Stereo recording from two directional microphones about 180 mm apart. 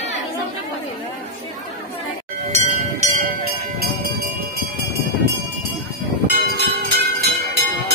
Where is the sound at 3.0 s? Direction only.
40° right (ahead or behind).